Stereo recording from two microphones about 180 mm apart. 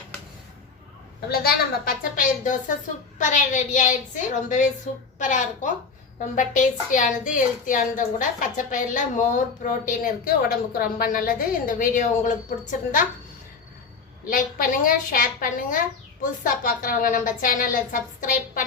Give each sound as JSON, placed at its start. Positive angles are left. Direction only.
{"t": 1.3, "sound": "a woman's voice", "side_deg": 60}
{"t": 14.3, "sound": "a woman's voice", "side_deg": 50}